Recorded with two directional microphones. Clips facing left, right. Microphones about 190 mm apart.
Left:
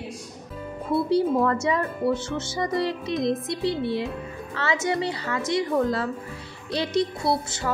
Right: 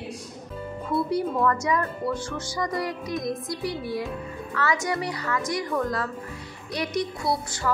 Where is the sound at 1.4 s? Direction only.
25° left (ahead or behind).